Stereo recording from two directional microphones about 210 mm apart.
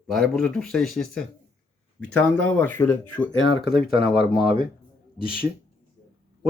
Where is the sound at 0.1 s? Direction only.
Centre (ahead or behind).